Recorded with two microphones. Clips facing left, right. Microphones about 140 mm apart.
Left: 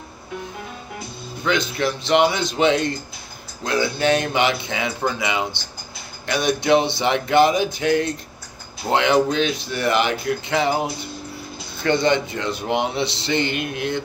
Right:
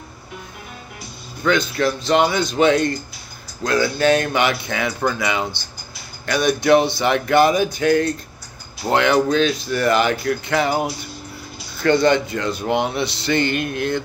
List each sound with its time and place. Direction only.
1.8 s speech: 20° left (ahead or behind)
11.8 s speech: 20° left (ahead or behind)